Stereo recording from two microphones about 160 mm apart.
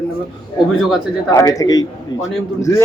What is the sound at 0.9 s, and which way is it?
A man's voice, 20° left (ahead or behind).